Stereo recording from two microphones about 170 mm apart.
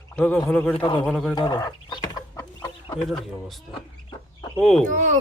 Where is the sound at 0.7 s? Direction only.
30° left (ahead or behind).